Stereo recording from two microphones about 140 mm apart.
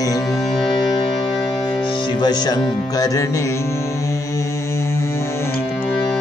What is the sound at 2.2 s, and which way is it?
Music, 30° left (ahead or behind).